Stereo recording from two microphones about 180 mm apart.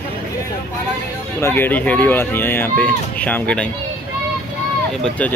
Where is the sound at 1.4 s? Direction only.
10° left (ahead or behind).